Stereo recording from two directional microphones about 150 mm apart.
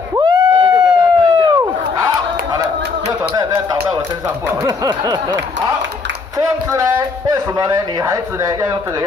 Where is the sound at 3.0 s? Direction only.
25° right (ahead or behind).